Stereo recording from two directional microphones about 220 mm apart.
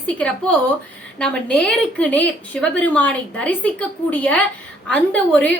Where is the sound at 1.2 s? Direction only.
5° left (ahead or behind).